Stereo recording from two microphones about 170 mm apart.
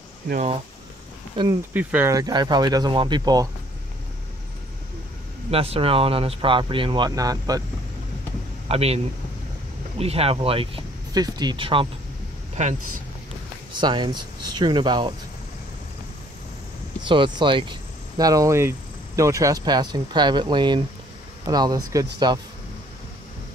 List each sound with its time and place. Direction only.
1.7 s speech: 10° right (ahead or behind)
5.5 s speech: 35° right (ahead or behind)
8.6 s speech: 35° right (ahead or behind)
12.6 s speech: 45° right (ahead or behind)
13.7 s speech: 25° right (ahead or behind)
17.0 s speech: 30° right (ahead or behind)